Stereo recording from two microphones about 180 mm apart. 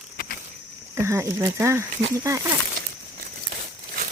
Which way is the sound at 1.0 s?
15° right (ahead or behind).